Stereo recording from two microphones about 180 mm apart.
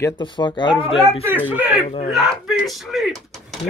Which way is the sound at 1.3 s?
10° right (ahead or behind).